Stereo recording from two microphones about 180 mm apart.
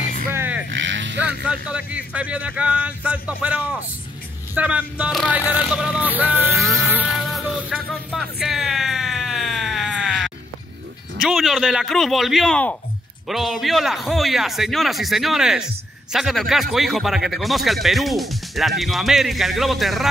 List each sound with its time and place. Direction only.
0.3 s vehicle: 10° right (ahead or behind)
0.7 s vehicle: 90° right
1.2 s speech: 5° right (ahead or behind)
5.5 s vehicle: 5° right (ahead or behind)
11.1 s speech: centre (ahead or behind)